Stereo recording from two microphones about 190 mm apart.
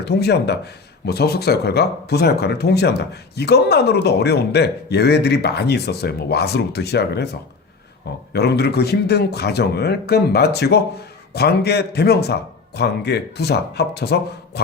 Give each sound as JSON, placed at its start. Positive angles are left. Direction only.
{"t": 0.0, "sound": "speech", "side_deg": 60}
{"t": 8.3, "sound": "speech", "side_deg": 60}